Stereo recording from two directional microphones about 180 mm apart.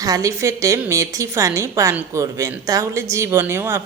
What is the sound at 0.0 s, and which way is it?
A woman's voice, 20° right (ahead or behind).